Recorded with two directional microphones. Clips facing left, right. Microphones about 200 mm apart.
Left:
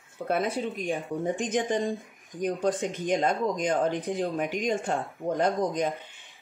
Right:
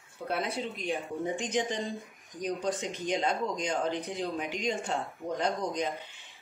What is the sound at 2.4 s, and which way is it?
Speech, 55° left (ahead or behind).